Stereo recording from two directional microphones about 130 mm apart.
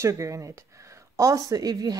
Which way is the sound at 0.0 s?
25° right (ahead or behind).